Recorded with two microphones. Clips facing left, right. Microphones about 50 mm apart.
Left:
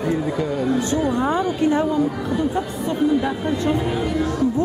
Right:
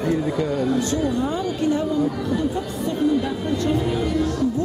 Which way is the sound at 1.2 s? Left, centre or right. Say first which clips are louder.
Left 3 dB; left.